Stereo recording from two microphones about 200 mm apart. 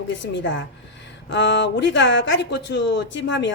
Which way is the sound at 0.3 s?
65° left (ahead or behind).